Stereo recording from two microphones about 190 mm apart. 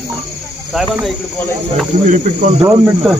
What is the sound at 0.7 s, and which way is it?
Speech, centre (ahead or behind).